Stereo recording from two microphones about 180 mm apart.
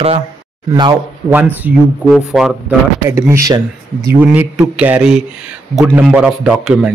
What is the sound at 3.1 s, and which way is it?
A man's voice, 15° right (ahead or behind).